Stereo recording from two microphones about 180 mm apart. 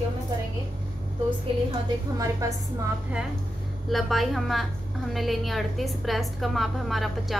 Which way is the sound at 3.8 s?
Centre (ahead or behind).